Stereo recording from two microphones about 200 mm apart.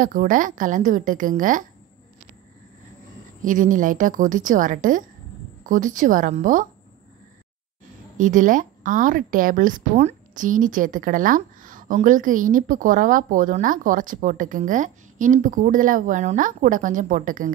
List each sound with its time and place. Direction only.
0.0 s a woman's voice: 45° right (ahead or behind)
3.4 s a woman's voice: 40° right (ahead or behind)
8.2 s a woman's voice: 40° right (ahead or behind)